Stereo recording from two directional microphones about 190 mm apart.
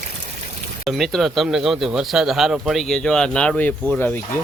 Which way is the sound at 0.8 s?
Centre (ahead or behind).